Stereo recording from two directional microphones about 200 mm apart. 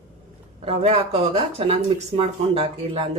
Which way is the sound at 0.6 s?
30° right (ahead or behind).